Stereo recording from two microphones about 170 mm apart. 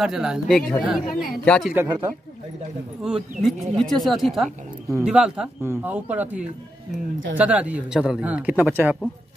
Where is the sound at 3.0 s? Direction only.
Centre (ahead or behind).